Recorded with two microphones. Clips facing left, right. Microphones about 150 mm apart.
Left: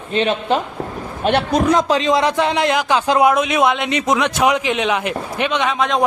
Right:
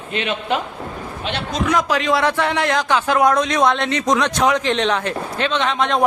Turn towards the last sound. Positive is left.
turn(degrees=0)  # may be behind; listen again after turning